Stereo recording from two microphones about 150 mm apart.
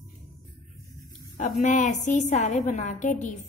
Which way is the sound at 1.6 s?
55° left (ahead or behind).